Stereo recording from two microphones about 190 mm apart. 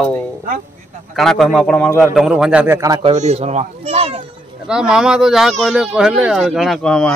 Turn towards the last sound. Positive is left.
turn(degrees=5)  # may be behind; listen again after turning